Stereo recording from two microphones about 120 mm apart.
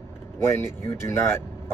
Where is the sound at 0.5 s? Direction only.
20° left (ahead or behind).